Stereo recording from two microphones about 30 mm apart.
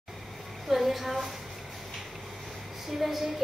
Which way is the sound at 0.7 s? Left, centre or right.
Centre.